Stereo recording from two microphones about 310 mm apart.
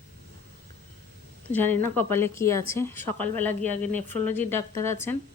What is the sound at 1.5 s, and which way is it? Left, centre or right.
A woman's voice, centre.